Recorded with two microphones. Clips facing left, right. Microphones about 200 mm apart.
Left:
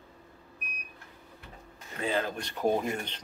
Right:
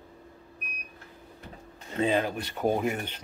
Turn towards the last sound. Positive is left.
turn(degrees=-5)  # may be behind; listen again after turning